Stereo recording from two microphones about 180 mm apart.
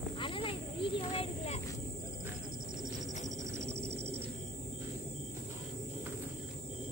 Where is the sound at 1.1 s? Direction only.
35° left (ahead or behind).